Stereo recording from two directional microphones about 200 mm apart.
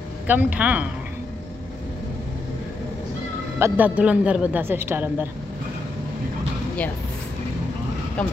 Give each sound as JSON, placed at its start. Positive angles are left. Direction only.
{"t": 0.3, "sound": "speech", "side_deg": -10}
{"t": 3.5, "sound": "speech", "side_deg": -10}